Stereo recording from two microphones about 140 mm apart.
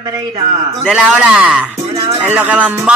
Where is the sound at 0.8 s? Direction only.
5° right (ahead or behind).